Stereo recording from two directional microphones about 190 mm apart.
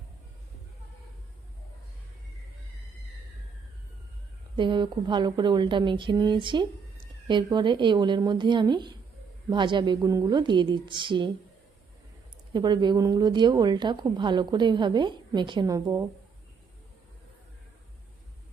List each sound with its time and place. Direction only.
4.5 s a woman's voice: 25° right (ahead or behind)
12.5 s a woman's voice: 25° right (ahead or behind)